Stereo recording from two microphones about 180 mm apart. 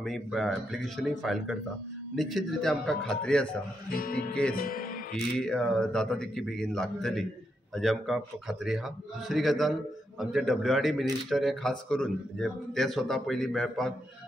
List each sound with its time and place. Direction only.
0.0 s speech: centre (ahead or behind)
3.9 s music: 55° left (ahead or behind)
4.6 s speech: 55° left (ahead or behind)
5.4 s speech: 5° left (ahead or behind)